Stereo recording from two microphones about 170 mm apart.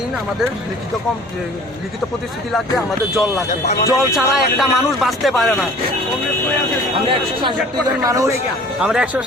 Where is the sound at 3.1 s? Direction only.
Centre (ahead or behind).